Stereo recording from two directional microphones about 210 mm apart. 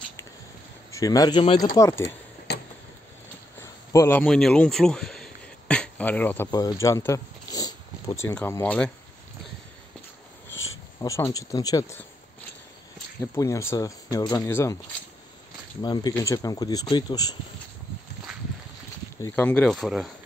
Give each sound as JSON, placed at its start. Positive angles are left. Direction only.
{"t": 0.9, "sound": "a man's voice", "side_deg": 15}
{"t": 1.8, "sound": "speech", "side_deg": 15}
{"t": 2.5, "sound": "a sound", "side_deg": 50}
{"t": 3.9, "sound": "speech", "side_deg": 10}
{"t": 10.5, "sound": "a sound", "side_deg": 70}
{"t": 11.0, "sound": "speech", "side_deg": 15}
{"t": 13.2, "sound": "speech", "side_deg": 15}
{"t": 15.8, "sound": "speech", "side_deg": 20}
{"t": 19.2, "sound": "speech", "side_deg": 10}